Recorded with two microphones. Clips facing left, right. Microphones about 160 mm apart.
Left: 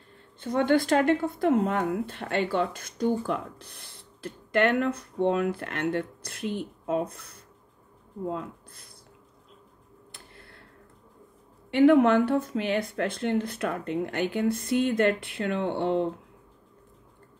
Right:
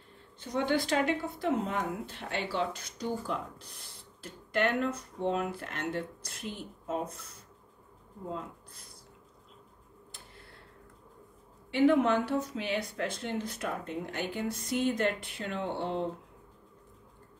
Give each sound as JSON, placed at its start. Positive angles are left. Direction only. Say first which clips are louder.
{"t": 0.4, "sound": "a woman's voice", "louder": "left 6 dB", "side_deg": 55}
{"t": 11.7, "sound": "speech", "louder": "left 6 dB", "side_deg": 60}